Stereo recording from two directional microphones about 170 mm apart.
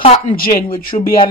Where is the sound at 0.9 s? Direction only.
35° left (ahead or behind).